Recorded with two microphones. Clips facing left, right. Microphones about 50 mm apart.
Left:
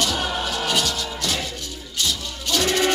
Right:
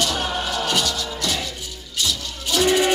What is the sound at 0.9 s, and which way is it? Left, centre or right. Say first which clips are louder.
Music: right 1 dB; left.